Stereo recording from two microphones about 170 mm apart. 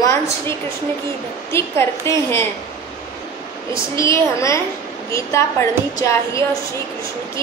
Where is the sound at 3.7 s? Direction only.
20° left (ahead or behind).